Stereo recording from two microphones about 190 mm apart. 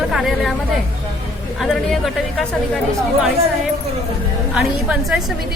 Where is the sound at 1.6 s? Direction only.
Centre (ahead or behind).